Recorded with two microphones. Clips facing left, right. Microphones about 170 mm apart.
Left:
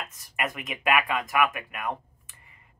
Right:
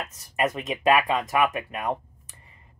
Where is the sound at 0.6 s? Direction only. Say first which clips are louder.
Right 3 dB; 30° right (ahead or behind).